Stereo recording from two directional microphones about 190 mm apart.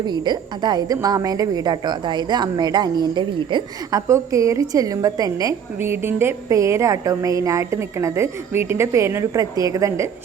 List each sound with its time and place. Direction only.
0.0 s a woman's voice: 20° right (ahead or behind)